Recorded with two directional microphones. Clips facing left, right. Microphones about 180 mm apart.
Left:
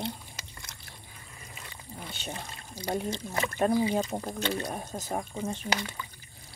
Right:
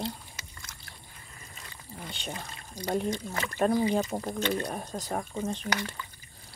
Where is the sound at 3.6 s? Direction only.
10° left (ahead or behind).